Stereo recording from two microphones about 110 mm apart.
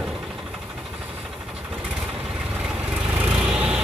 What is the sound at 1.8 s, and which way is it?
Vehicle, 10° right (ahead or behind).